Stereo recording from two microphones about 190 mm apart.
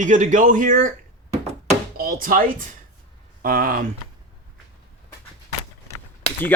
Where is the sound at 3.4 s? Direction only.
50° right (ahead or behind).